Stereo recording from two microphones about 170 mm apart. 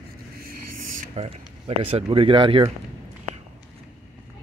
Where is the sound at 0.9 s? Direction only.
35° right (ahead or behind).